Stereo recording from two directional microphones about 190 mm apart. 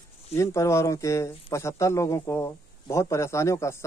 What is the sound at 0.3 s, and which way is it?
Speech, 15° left (ahead or behind).